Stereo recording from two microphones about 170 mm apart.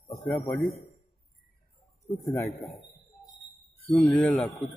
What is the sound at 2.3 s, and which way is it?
Speech, 15° left (ahead or behind).